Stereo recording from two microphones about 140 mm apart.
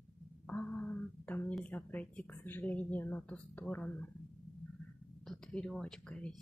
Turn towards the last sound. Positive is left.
turn(degrees=5)  # may be behind; listen again after turning